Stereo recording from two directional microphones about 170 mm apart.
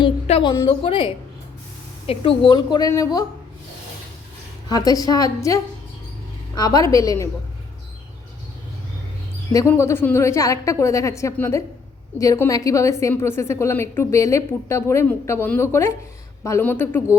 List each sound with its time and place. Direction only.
0.0 s a woman's voice: 30° left (ahead or behind)
4.7 s a woman's voice: 20° left (ahead or behind)
9.5 s a woman's voice: 20° left (ahead or behind)